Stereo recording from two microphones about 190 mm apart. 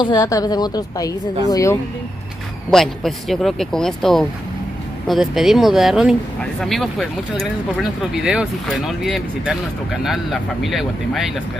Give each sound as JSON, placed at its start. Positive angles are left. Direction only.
{"t": 0.0, "sound": "a woman's voice", "side_deg": 20}
{"t": 2.7, "sound": "speech", "side_deg": 0}